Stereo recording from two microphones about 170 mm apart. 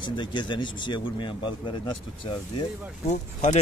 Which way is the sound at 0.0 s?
25° left (ahead or behind).